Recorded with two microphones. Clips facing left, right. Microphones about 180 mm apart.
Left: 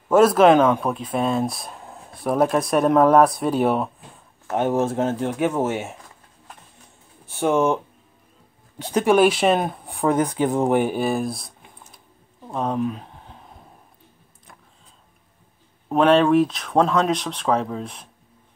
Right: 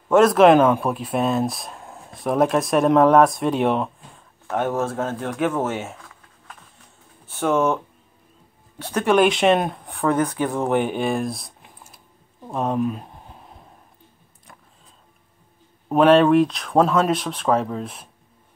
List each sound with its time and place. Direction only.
0.1 s speech: 5° left (ahead or behind)
4.6 s speech: 15° left (ahead or behind)
7.3 s speech: 10° left (ahead or behind)
12.4 s a sound: 5° right (ahead or behind)
15.9 s speech: centre (ahead or behind)